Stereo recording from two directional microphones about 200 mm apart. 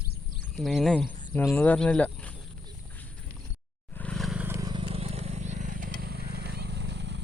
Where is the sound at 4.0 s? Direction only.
5° left (ahead or behind).